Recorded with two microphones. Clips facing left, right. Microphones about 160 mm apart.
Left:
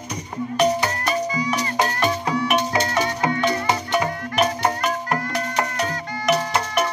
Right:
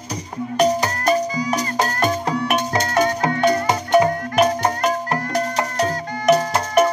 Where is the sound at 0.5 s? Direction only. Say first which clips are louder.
Right 2 dB; 40° right (ahead or behind).